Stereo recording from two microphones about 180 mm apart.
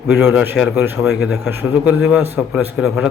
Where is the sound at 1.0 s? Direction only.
Centre (ahead or behind).